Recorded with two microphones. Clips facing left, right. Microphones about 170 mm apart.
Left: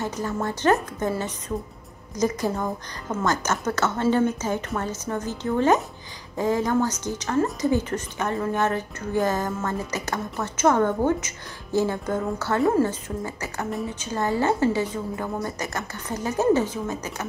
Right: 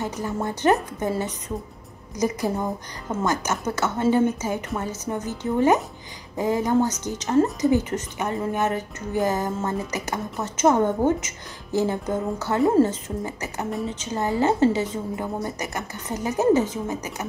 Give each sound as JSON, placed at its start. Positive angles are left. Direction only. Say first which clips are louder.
{"t": 0.0, "sound": "a woman's voice", "louder": "even", "side_deg": -15}